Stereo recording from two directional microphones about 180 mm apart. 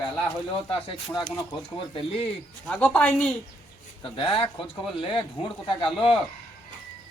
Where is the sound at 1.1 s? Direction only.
20° left (ahead or behind).